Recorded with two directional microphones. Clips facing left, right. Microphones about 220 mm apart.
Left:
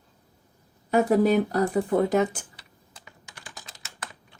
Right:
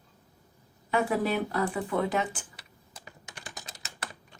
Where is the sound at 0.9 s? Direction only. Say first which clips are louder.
Left 7 dB; 40° left (ahead or behind).